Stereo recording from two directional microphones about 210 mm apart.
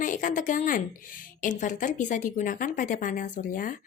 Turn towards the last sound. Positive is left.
turn(degrees=40)  # may be behind; listen again after turning